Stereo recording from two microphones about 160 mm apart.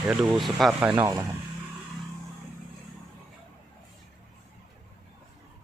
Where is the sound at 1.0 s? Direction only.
25° right (ahead or behind).